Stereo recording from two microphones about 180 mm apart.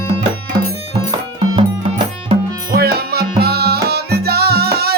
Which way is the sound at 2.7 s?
60° right (ahead or behind).